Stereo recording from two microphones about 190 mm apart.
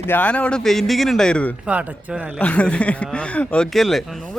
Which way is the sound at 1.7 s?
10° right (ahead or behind).